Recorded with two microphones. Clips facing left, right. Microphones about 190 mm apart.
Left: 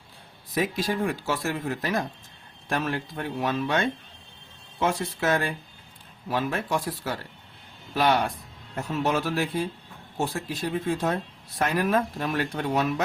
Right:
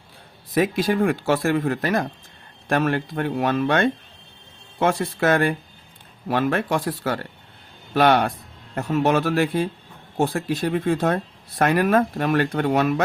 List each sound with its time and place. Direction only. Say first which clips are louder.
0.5 s speech: right 6 dB; 60° right (ahead or behind)